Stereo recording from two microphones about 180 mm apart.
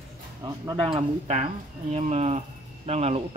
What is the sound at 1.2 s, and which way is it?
Speech, 40° right (ahead or behind).